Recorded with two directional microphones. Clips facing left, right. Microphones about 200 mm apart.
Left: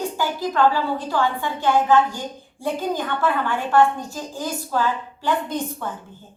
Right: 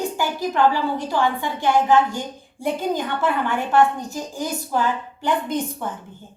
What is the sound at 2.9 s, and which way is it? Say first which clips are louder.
A woman's voice: left 1 dB; 20° right (ahead or behind).